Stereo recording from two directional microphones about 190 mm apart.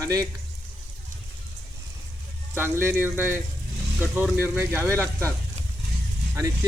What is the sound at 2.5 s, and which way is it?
Speech, 15° right (ahead or behind).